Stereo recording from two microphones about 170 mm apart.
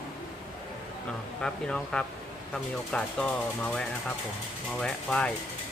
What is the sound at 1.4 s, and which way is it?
Speech, 5° left (ahead or behind).